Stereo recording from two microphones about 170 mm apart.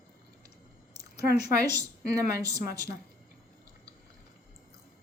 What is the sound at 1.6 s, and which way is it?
A woman's voice, 20° right (ahead or behind).